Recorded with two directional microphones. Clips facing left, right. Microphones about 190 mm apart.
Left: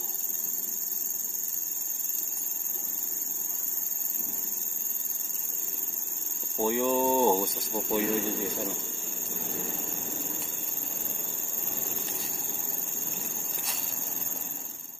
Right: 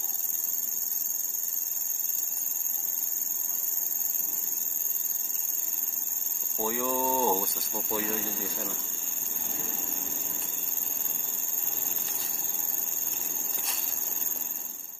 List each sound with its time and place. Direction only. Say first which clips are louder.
6.6 s cricket: left 4 dB; 20° left (ahead or behind)